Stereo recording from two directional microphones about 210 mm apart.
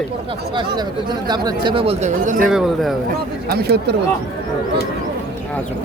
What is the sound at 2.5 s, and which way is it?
Speech, 5° right (ahead or behind).